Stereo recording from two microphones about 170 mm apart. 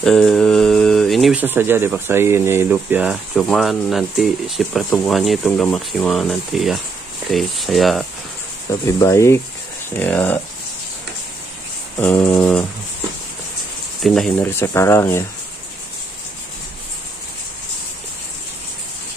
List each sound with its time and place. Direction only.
0.0 s a sound: 5° left (ahead or behind)
1.4 s speech: 10° right (ahead or behind)
8.8 s speech: 20° left (ahead or behind)
12.0 s speech: 10° left (ahead or behind)
14.0 s speech: centre (ahead or behind)
14.4 s speech: 15° left (ahead or behind)